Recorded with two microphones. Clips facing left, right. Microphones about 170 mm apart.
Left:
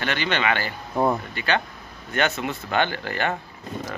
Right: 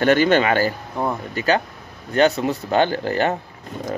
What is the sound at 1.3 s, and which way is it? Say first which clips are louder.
Speech: right 5 dB; 40° right (ahead or behind).